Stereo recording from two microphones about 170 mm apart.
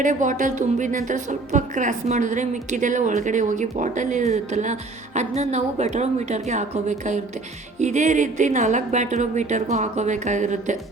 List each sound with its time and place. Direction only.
0.0 s a woman's voice: 50° right (ahead or behind)